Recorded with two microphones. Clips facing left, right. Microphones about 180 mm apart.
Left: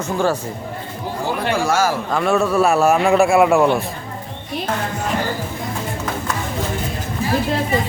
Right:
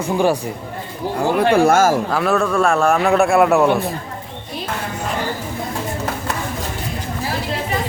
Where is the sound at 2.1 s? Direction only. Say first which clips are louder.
Left 1 dB; centre (ahead or behind).